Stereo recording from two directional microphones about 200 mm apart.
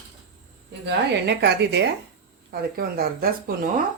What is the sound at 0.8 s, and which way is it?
A woman's voice, 60° right (ahead or behind).